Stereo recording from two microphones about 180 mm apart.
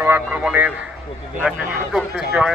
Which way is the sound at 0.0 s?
10° right (ahead or behind).